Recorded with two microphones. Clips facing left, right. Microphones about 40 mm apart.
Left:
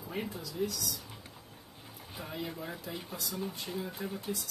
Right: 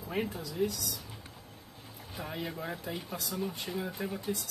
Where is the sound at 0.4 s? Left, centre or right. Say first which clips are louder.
Right 3 dB; right.